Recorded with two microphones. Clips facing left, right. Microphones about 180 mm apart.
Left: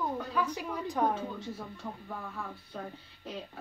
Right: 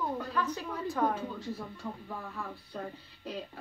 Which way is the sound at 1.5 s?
Centre (ahead or behind).